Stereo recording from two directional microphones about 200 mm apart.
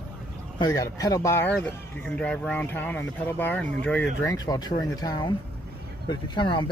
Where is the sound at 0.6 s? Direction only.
20° left (ahead or behind).